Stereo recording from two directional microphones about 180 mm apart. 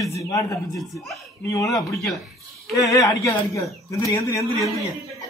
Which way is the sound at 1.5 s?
20° left (ahead or behind).